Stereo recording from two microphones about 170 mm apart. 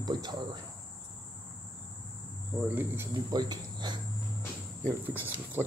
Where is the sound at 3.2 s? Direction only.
25° right (ahead or behind).